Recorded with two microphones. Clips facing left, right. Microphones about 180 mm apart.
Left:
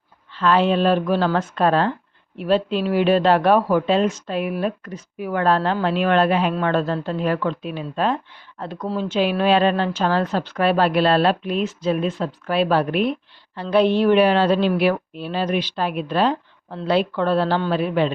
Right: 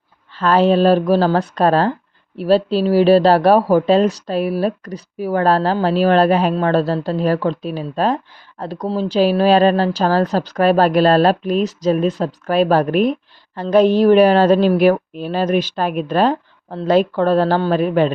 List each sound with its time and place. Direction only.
0.3 s a woman's voice: 40° right (ahead or behind)